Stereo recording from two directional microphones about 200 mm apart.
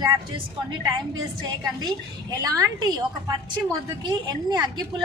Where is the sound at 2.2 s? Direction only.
20° right (ahead or behind).